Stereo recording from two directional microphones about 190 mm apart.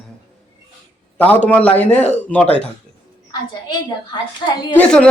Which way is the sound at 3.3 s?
25° left (ahead or behind).